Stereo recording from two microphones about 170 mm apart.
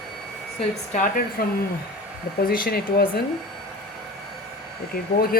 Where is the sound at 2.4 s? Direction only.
60° left (ahead or behind).